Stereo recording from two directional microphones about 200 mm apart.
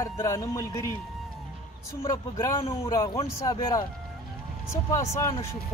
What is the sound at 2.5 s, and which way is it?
Speech, 25° left (ahead or behind).